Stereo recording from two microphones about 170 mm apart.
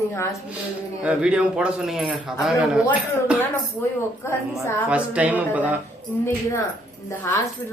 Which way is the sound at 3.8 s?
15° left (ahead or behind).